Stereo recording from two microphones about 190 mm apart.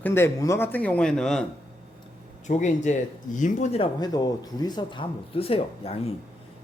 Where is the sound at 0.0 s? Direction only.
10° left (ahead or behind).